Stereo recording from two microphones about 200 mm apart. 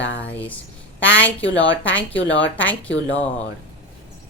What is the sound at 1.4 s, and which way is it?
Speech, 70° left (ahead or behind).